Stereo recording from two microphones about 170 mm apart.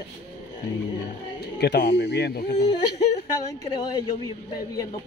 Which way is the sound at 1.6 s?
90° left.